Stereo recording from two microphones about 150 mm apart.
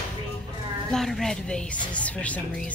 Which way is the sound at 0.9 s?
5° left (ahead or behind).